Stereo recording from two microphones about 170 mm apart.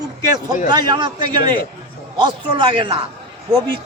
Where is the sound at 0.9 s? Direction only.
25° right (ahead or behind).